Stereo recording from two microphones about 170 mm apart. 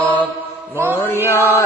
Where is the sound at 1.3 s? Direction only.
15° left (ahead or behind).